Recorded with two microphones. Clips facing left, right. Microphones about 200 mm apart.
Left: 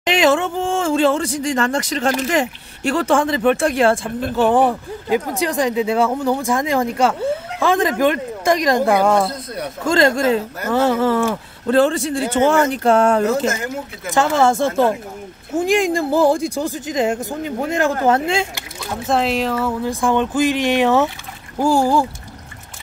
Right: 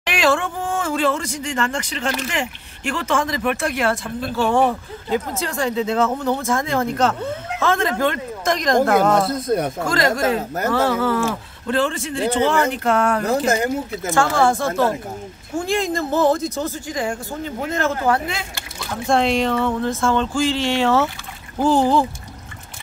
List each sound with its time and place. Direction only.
0.0 s speech: 20° left (ahead or behind)
4.4 s speech: 15° left (ahead or behind)
9.8 s speech: 25° left (ahead or behind)
11.6 s speech: 35° left (ahead or behind)
12.8 s speech: 30° left (ahead or behind)
13.5 s speech: 35° right (ahead or behind)
14.1 s speech: 25° left (ahead or behind)
18.0 s speech: 25° left (ahead or behind)
19.0 s speech: 5° left (ahead or behind)